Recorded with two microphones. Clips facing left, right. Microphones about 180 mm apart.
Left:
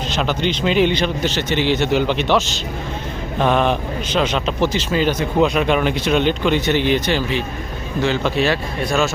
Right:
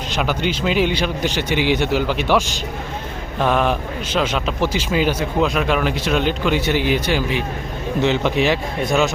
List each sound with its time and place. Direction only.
0.1 s a man's voice: 10° right (ahead or behind)
5.4 s a man's voice: centre (ahead or behind); by 9.0 s 20° right (ahead or behind)